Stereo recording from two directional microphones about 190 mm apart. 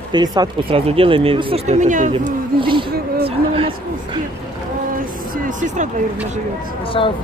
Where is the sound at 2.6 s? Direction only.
25° right (ahead or behind).